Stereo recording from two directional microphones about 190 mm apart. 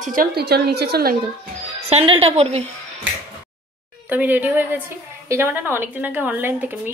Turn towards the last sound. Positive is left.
turn(degrees=-10)  # may be behind; listen again after turning